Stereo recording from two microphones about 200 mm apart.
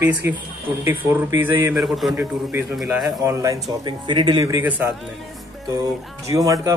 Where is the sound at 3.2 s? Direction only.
15° right (ahead or behind).